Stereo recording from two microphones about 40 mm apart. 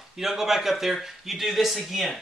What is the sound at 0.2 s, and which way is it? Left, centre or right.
Speech, centre.